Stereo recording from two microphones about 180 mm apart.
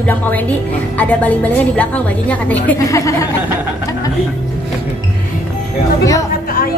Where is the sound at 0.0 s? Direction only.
10° left (ahead or behind).